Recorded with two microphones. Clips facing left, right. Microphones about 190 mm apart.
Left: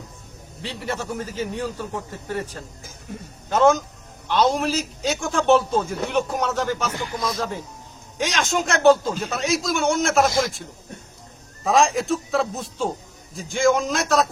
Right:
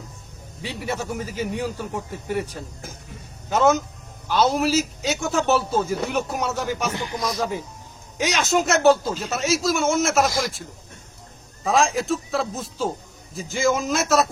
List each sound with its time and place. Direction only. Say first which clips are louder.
0.6 s a man's voice: right 1 dB; 10° right (ahead or behind)
6.9 s speech: even; 25° right (ahead or behind)
7.3 s a man's voice: right 2 dB; 10° right (ahead or behind)